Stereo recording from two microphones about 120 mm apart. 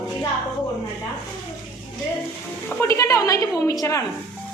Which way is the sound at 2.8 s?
25° left (ahead or behind).